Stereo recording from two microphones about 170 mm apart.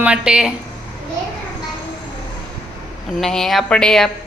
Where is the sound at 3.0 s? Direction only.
Centre (ahead or behind).